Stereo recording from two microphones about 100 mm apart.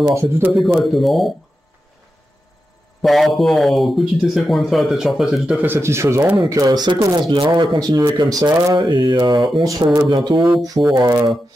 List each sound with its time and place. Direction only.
0.0 s speech: 30° right (ahead or behind)
0.5 s speech: centre (ahead or behind)
3.0 s speech: centre (ahead or behind)
5.6 s speech: 25° right (ahead or behind)
6.5 s speech: 40° right (ahead or behind)
7.2 s speech: 55° right (ahead or behind); by 8.7 s 35° right (ahead or behind)
8.7 s mantra: 55° right (ahead or behind)
9.6 s speech: 40° right (ahead or behind)
10.0 s mantra: 50° right (ahead or behind)
10.6 s speech: 35° right (ahead or behind)